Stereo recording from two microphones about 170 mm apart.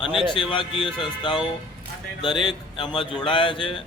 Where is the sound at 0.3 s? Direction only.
30° left (ahead or behind).